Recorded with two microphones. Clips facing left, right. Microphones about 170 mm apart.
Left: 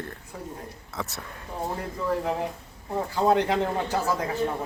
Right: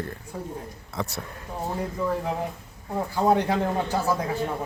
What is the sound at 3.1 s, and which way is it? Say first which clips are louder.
Speech: even; 10° right (ahead or behind).